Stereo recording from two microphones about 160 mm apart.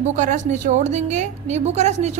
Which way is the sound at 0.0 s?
50° right (ahead or behind).